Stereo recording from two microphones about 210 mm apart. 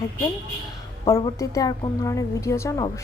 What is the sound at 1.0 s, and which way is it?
A woman's voice, 15° left (ahead or behind).